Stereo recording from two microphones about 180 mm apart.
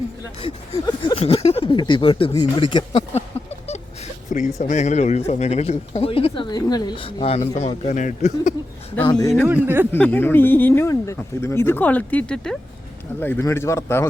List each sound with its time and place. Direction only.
1.1 s speech: 30° left (ahead or behind)
3.7 s a sound: 40° left (ahead or behind)
4.6 s speech: 40° left (ahead or behind)
9.0 s speech: 20° left (ahead or behind)
9.5 s speech: 10° right (ahead or behind)
9.9 s speech: 10° left (ahead or behind)